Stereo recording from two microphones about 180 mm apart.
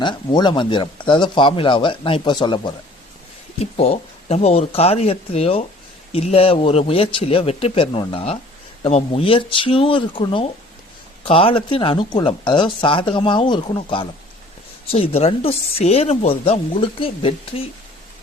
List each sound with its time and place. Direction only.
0.0 s speech: 25° left (ahead or behind)